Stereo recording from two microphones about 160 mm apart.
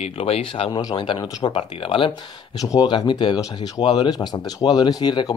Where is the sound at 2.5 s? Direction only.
20° left (ahead or behind).